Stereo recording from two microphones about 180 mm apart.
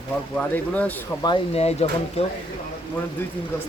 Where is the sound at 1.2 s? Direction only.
30° left (ahead or behind).